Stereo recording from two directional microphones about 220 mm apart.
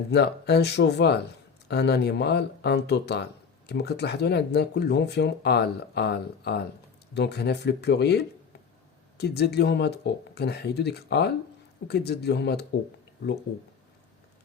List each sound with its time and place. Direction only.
0.1 s speech: 50° left (ahead or behind)